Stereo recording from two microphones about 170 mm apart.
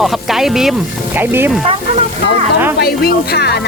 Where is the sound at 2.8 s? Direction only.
65° left (ahead or behind).